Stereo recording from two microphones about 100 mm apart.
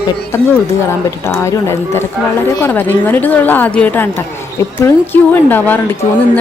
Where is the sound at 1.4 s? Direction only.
30° left (ahead or behind).